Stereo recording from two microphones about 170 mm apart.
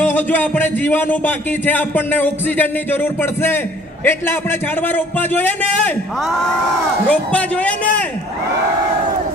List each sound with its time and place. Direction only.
0.0 s a man's voice: 10° left (ahead or behind)
7.1 s a man's voice: 10° left (ahead or behind)